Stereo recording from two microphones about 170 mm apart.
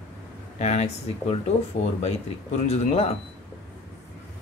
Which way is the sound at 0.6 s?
40° left (ahead or behind).